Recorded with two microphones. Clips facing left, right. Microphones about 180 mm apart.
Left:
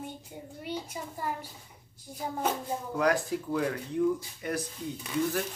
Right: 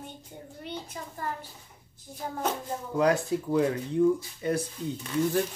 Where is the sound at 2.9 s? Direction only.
25° right (ahead or behind).